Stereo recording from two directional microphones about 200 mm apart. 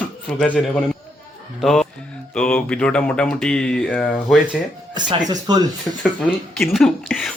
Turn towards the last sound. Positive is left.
turn(degrees=0)  # may be behind; listen again after turning